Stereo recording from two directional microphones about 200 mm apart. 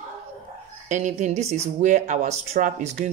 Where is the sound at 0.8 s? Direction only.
35° right (ahead or behind).